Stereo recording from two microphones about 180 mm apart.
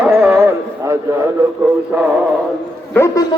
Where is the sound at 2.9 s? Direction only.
15° left (ahead or behind).